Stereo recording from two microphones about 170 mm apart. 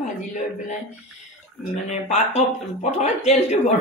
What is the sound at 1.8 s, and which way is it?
Speech, 40° left (ahead or behind).